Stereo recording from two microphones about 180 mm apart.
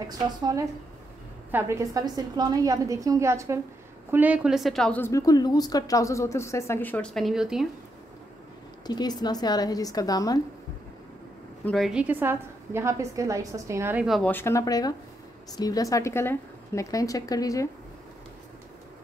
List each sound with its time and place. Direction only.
1.5 s a woman's voice: 15° right (ahead or behind)
8.8 s a woman's voice: 20° left (ahead or behind)
11.6 s a woman's voice: centre (ahead or behind); by 14.0 s 15° right (ahead or behind)
14.0 s speech: centre (ahead or behind)
14.3 s a woman's voice: 15° left (ahead or behind)